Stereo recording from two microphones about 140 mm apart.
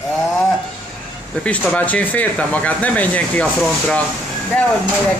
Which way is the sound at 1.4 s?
10° left (ahead or behind).